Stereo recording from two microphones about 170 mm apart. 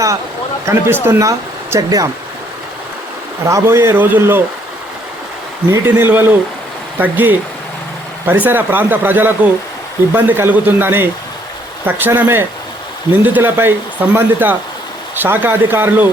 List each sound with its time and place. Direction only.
0.6 s a man's voice: 15° right (ahead or behind)
3.4 s speech: 15° right (ahead or behind)
5.7 s speech: 15° right (ahead or behind)
8.4 s speech: 10° right (ahead or behind)